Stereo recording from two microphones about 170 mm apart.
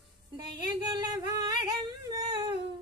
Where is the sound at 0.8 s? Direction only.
20° right (ahead or behind).